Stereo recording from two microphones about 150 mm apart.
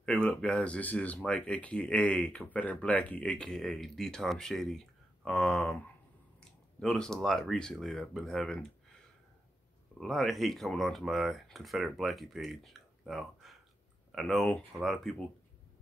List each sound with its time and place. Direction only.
0.0 s speech: 5° left (ahead or behind)
9.9 s speech: centre (ahead or behind)